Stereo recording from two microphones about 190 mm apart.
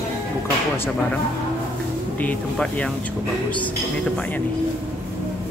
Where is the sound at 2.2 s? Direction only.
10° left (ahead or behind).